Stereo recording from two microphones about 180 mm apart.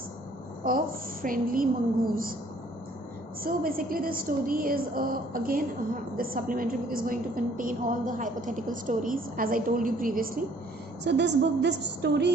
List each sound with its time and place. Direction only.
0.7 s a woman's voice: 50° right (ahead or behind)
3.4 s a woman's voice: 55° right (ahead or behind)
11.0 s a woman's voice: 75° right (ahead or behind)